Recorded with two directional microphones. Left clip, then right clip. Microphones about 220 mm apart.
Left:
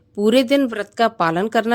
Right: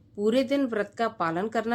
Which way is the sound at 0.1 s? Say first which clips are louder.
Left 9 dB; 40° left (ahead or behind).